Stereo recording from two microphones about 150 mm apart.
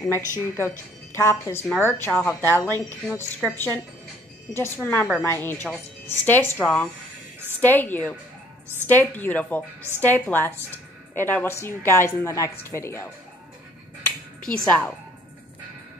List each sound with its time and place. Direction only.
0.1 s a woman's voice: 15° left (ahead or behind)
14.0 s finger snapping: 5° left (ahead or behind)